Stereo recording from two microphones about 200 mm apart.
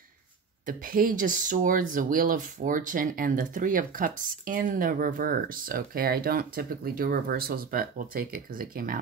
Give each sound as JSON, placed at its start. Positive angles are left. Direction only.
{"t": 0.7, "sound": "speech", "side_deg": -45}